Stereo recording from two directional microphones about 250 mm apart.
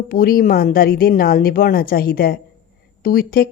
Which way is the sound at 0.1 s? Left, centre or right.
Left.